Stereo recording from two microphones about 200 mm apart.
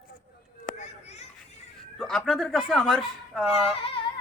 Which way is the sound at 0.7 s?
35° left (ahead or behind).